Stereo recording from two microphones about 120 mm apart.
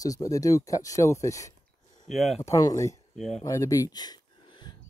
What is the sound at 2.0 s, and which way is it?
Speech, centre (ahead or behind).